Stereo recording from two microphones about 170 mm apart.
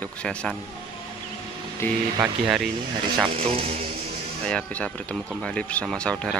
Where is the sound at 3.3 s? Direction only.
35° right (ahead or behind).